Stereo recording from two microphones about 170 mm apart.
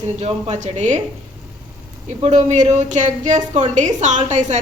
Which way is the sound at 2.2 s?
45° right (ahead or behind).